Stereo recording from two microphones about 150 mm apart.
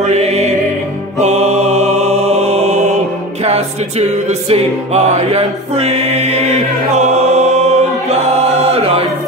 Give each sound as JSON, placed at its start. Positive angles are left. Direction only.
{"t": 0.0, "sound": "music", "side_deg": -50}
{"t": 8.7, "sound": "music", "side_deg": -40}